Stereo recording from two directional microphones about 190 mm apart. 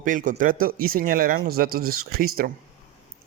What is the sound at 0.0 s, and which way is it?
A man's voice, 45° right (ahead or behind).